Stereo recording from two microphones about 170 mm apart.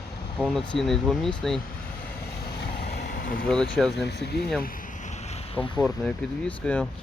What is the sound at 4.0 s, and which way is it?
Speech, 75° left (ahead or behind).